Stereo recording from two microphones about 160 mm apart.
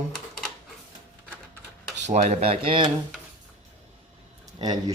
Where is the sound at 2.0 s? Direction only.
45° right (ahead or behind).